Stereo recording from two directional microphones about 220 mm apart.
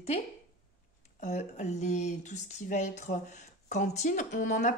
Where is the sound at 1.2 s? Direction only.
30° left (ahead or behind).